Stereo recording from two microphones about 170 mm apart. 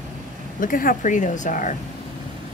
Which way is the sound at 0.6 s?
55° left (ahead or behind).